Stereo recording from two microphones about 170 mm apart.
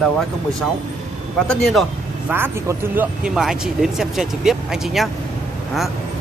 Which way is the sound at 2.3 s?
10° right (ahead or behind).